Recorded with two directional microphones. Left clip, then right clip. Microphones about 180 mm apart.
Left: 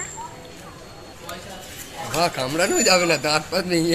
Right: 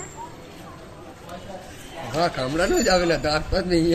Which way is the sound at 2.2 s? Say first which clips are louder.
Left 1 dB; 10° right (ahead or behind).